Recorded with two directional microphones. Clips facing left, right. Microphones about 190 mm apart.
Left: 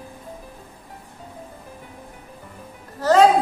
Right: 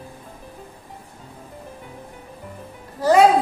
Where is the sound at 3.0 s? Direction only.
10° right (ahead or behind).